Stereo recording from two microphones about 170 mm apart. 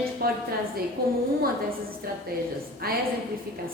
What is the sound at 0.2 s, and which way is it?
A woman's voice, 60° right (ahead or behind).